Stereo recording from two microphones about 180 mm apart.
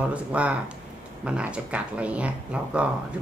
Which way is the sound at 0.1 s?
5° right (ahead or behind).